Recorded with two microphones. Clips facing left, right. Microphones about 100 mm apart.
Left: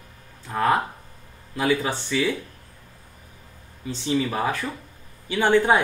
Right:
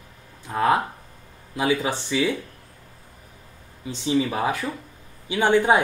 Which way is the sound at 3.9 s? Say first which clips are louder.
Right 1 dB; 15° right (ahead or behind).